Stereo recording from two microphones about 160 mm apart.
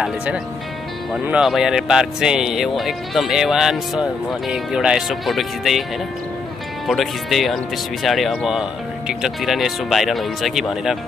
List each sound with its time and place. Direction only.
0.0 s speech: 5° right (ahead or behind)
6.9 s speech: centre (ahead or behind)